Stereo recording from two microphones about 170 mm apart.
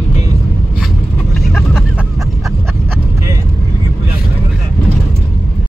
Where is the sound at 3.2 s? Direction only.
20° right (ahead or behind).